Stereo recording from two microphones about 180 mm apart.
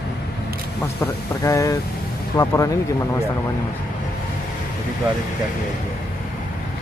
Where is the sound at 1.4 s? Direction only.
20° left (ahead or behind).